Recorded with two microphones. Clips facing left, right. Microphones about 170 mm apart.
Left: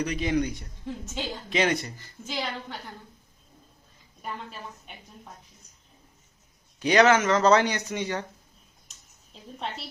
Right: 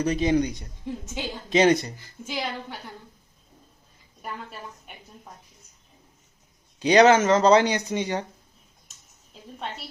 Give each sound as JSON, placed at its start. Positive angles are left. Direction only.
{"t": 0.0, "sound": "speech", "side_deg": -35}
{"t": 0.3, "sound": "speech", "side_deg": -20}
{"t": 1.5, "sound": "speech", "side_deg": -35}
{"t": 1.8, "sound": "a woman's voice", "side_deg": -10}
{"t": 6.7, "sound": "speech", "side_deg": -20}
{"t": 7.0, "sound": "speech", "side_deg": -30}